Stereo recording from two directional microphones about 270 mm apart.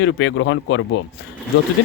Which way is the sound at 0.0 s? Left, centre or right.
Left.